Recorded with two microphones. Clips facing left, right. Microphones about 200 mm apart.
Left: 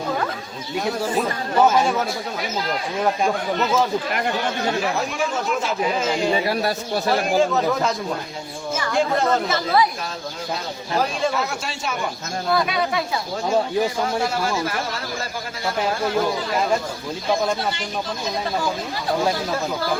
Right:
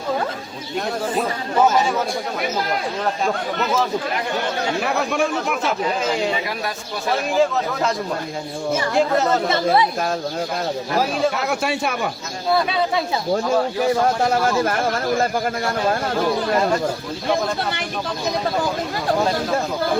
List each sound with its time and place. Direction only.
3.0 s speech: 10° left (ahead or behind)
4.8 s speech: 60° right (ahead or behind)
7.1 s speech: centre (ahead or behind)
11.4 s speech: 60° right (ahead or behind)
14.3 s speech: 50° right (ahead or behind)